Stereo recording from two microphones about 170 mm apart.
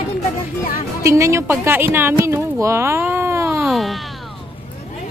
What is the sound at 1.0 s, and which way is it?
Speech, 15° right (ahead or behind).